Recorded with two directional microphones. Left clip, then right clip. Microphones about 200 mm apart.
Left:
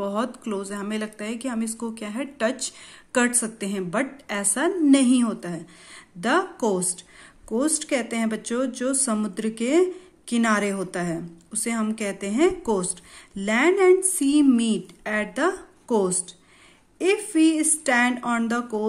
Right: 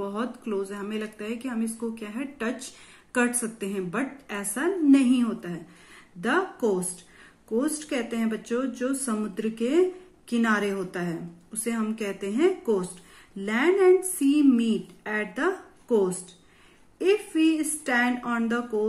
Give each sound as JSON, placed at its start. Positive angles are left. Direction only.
{"t": 0.0, "sound": "speech", "side_deg": 45}
{"t": 7.5, "sound": "speech", "side_deg": 45}